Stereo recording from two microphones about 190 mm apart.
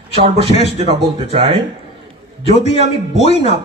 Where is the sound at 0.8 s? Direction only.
30° right (ahead or behind).